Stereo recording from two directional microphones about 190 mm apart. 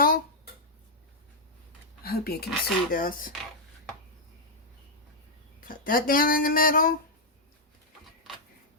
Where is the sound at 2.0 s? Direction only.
55° left (ahead or behind).